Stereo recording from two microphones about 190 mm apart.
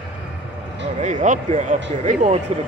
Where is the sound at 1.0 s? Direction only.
40° right (ahead or behind).